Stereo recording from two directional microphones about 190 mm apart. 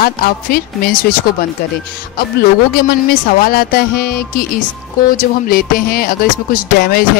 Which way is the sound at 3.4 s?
50° left (ahead or behind).